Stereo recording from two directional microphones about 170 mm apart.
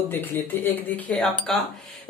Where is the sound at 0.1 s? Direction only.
10° left (ahead or behind).